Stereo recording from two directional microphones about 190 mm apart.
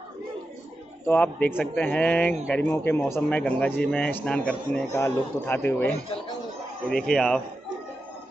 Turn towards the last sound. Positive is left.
turn(degrees=5)  # may be behind; listen again after turning